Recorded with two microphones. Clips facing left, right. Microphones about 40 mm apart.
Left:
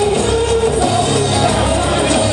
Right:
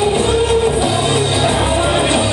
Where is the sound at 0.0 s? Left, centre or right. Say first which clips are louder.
Even; right.